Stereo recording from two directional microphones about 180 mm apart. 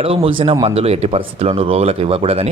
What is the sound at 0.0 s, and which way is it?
Speech, 30° right (ahead or behind).